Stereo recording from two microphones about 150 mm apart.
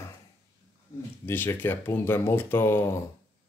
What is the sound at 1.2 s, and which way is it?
Speech, 15° left (ahead or behind).